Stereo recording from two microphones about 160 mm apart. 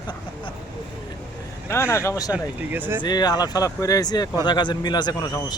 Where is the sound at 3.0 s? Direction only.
25° left (ahead or behind).